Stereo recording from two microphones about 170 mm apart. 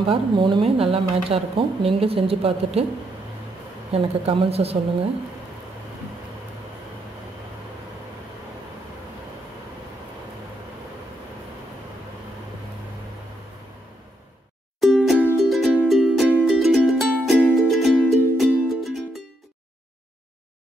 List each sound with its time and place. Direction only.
0.0 s speech: 30° right (ahead or behind)
3.9 s speech: 35° right (ahead or behind)
14.8 s music: centre (ahead or behind)